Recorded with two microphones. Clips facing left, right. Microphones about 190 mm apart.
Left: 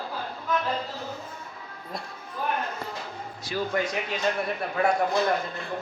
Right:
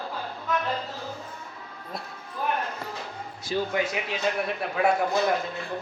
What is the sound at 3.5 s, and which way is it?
Speech, 30° right (ahead or behind).